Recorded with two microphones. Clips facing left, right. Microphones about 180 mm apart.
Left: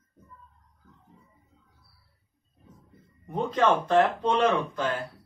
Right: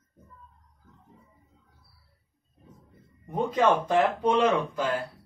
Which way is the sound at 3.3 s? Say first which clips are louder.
Right 1 dB; 10° right (ahead or behind).